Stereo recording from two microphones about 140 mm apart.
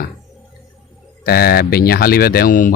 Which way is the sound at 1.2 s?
90° left.